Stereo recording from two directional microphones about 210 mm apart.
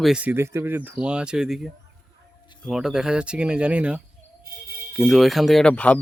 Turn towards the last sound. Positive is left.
turn(degrees=5)  # may be behind; listen again after turning